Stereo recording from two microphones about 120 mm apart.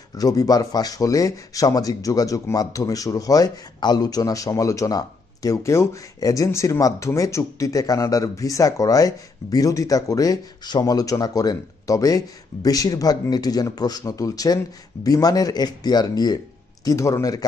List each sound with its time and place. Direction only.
0.2 s a man's voice: 30° left (ahead or behind)